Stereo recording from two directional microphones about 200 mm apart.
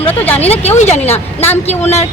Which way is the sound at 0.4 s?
30° left (ahead or behind).